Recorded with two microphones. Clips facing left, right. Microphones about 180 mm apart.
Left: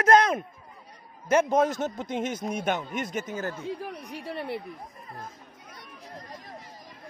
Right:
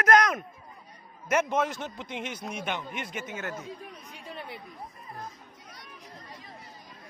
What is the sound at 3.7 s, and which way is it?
Speech, 65° left (ahead or behind).